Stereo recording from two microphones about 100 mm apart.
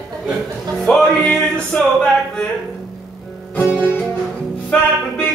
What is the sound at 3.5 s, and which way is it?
Music, 20° left (ahead or behind).